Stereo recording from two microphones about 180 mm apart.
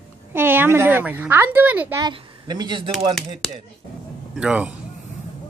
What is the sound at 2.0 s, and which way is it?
Speech, 25° right (ahead or behind).